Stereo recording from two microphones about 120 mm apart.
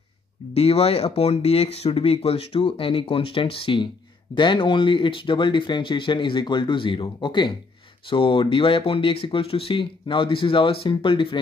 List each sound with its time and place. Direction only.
0.6 s speech: 55° left (ahead or behind)